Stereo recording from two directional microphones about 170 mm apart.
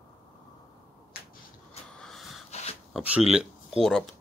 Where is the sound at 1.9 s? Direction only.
5° left (ahead or behind).